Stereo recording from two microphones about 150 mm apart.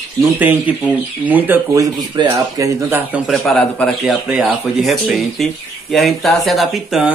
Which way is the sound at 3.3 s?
Centre (ahead or behind).